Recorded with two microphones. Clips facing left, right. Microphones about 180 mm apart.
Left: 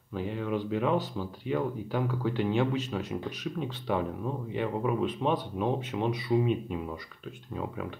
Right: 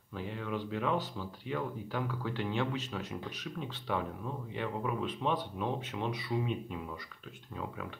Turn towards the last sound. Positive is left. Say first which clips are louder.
# left 6 dB
turn(degrees=20)  # may be behind; listen again after turning